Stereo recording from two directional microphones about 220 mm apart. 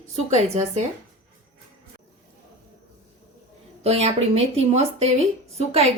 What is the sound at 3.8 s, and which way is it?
Speech, 30° right (ahead or behind).